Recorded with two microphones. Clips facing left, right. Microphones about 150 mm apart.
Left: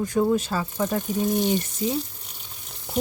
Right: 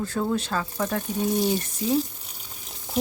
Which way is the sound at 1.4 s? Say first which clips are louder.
Left 1 dB; 5° right (ahead or behind).